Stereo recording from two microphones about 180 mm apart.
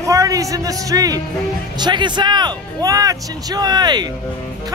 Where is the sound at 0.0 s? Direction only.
20° right (ahead or behind).